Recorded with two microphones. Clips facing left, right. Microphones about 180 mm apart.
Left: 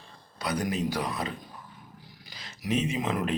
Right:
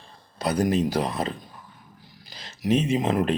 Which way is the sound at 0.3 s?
45° right (ahead or behind).